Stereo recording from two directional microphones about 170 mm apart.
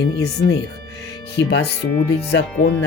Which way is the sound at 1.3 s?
80° left.